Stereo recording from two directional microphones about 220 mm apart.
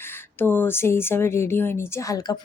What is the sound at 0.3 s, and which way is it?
Speech, 10° left (ahead or behind).